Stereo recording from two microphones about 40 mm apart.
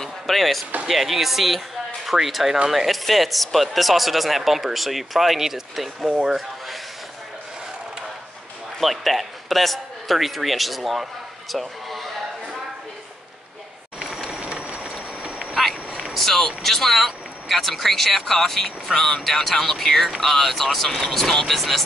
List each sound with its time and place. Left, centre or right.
0.3 s speech: centre
8.8 s a man's voice: centre
14.2 s vehicle: right
16.2 s speech: centre